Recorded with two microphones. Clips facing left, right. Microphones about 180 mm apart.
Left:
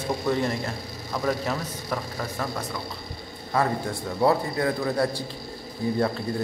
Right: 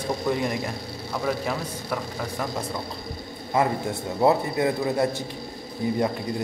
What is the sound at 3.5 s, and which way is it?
A man's voice, 20° right (ahead or behind).